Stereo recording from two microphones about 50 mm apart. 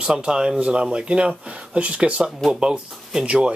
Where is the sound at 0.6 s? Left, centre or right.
Right.